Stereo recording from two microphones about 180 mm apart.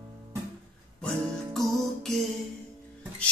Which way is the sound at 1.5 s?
Centre (ahead or behind).